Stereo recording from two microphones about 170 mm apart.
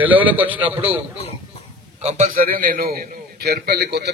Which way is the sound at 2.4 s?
55° right (ahead or behind).